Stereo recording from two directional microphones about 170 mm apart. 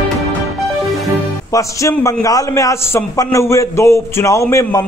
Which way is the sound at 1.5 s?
20° left (ahead or behind).